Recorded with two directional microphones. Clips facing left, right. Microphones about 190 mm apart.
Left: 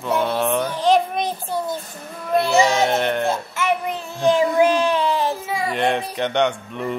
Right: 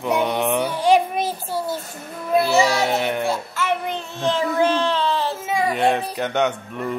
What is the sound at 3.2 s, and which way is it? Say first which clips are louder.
Music: left 1 dB; 15° left (ahead or behind).